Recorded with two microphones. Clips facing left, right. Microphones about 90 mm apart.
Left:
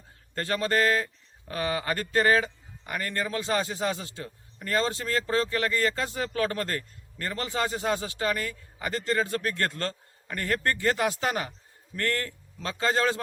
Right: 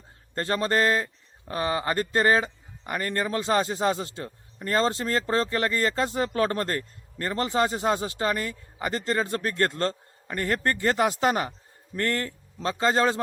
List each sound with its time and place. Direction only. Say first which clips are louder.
0.3 s a man's voice: right 2 dB; 30° right (ahead or behind)